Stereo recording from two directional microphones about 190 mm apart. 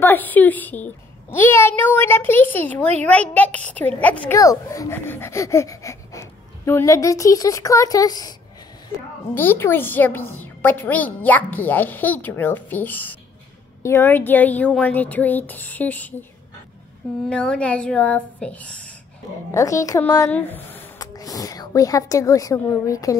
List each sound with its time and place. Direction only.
0.0 s a woman's voice: 10° left (ahead or behind)
17.3 s a woman's voice: 5° left (ahead or behind)
19.5 s a woman's voice: 15° left (ahead or behind)